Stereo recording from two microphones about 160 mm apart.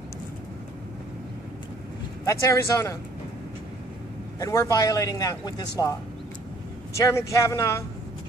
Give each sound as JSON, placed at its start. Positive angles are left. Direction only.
{"t": 2.2, "sound": "a man's voice", "side_deg": 20}
{"t": 4.4, "sound": "a man's voice", "side_deg": 20}
{"t": 7.0, "sound": "a man's voice", "side_deg": 20}